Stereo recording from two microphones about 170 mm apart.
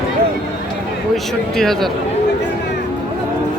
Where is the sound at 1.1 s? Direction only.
Centre (ahead or behind).